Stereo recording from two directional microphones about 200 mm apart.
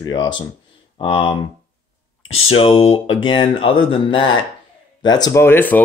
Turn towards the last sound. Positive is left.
turn(degrees=10)  # may be behind; listen again after turning